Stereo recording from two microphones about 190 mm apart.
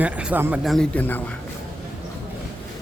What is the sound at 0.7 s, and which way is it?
Speech, 10° left (ahead or behind).